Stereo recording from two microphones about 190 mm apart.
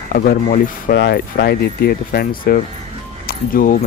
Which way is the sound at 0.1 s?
50° left (ahead or behind).